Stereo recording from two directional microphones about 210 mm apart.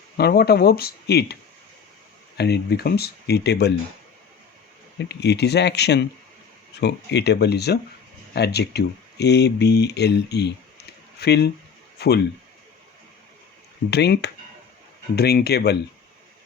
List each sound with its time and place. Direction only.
0.2 s speech: 50° left (ahead or behind)
2.4 s speech: 50° left (ahead or behind)
5.0 s speech: 55° left (ahead or behind)
13.9 s speech: 50° left (ahead or behind)